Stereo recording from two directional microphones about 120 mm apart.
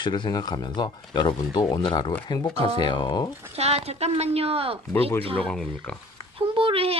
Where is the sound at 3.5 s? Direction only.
60° right (ahead or behind).